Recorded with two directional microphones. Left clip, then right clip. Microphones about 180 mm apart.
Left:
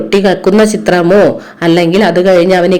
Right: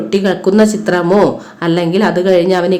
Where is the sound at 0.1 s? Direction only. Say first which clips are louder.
Left 4 dB; 20° left (ahead or behind).